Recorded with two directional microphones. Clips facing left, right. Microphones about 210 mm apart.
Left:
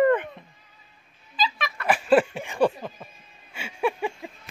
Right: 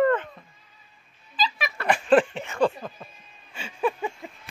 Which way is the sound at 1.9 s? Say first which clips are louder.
Even; 5° left (ahead or behind).